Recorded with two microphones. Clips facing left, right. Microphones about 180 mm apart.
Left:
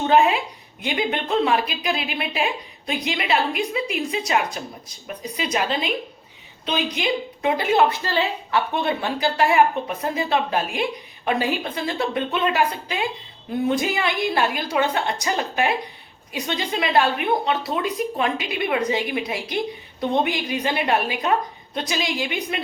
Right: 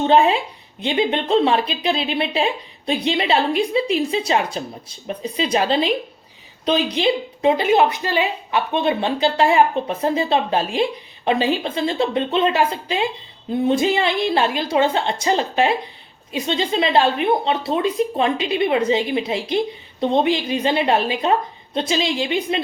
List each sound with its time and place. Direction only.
0.1 s a woman's voice: 30° right (ahead or behind)